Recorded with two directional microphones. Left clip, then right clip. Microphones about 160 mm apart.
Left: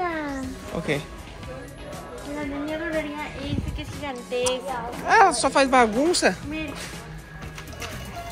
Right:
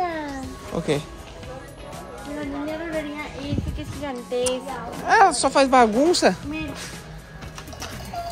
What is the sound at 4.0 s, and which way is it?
Speech, 65° right (ahead or behind).